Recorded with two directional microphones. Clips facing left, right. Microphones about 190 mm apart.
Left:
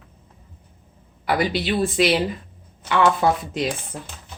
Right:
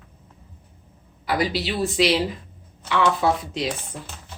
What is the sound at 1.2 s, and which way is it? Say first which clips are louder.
Speech: left 2 dB; 55° left (ahead or behind).